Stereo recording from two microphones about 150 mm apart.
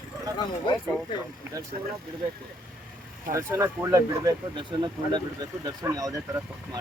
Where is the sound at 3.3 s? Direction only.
20° right (ahead or behind).